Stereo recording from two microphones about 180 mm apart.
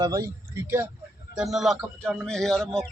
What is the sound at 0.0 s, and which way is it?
Speech, 15° right (ahead or behind).